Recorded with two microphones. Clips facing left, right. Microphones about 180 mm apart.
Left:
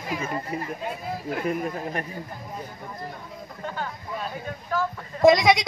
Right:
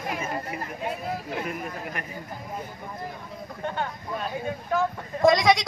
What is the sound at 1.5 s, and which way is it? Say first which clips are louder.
Speech: left 6 dB; 35° left (ahead or behind).